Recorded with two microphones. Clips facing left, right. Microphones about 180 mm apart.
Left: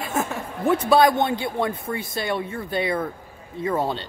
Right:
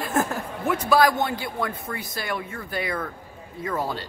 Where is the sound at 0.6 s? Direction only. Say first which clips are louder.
Left 3 dB; 30° left (ahead or behind).